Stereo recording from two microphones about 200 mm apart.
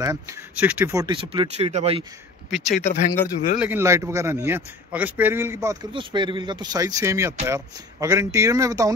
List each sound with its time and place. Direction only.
0.0 s speech: 15° right (ahead or behind); by 2.0 s 30° right (ahead or behind)
2.7 s speech: 35° left (ahead or behind)
3.5 s a man's voice: 10° right (ahead or behind)